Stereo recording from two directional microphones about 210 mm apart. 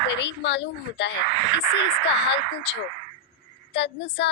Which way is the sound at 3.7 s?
55° left (ahead or behind).